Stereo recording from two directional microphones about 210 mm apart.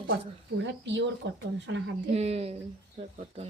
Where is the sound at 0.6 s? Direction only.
60° right (ahead or behind).